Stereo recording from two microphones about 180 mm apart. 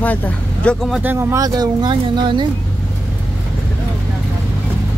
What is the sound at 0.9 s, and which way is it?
Speech, 15° right (ahead or behind).